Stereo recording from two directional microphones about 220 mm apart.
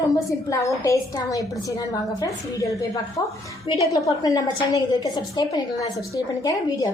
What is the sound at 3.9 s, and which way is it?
A woman's voice, 15° left (ahead or behind).